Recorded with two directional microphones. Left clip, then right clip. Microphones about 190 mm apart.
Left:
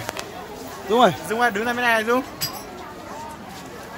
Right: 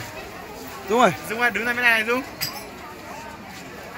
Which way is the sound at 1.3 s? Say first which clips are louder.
Left 1 dB; 35° left (ahead or behind).